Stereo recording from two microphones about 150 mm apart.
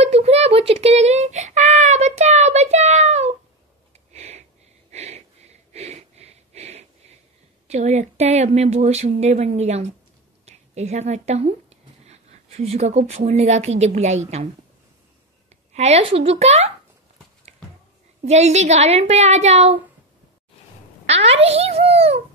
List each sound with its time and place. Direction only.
0.0 s a sound: 45° right (ahead or behind)
4.1 s sniff: 45° right (ahead or behind)
4.9 s a sound: 45° right (ahead or behind)
7.6 s a woman's voice: 45° right (ahead or behind)
15.7 s speech: 45° right (ahead or behind)
18.2 s speech: 45° right (ahead or behind)
21.1 s speech: 45° right (ahead or behind)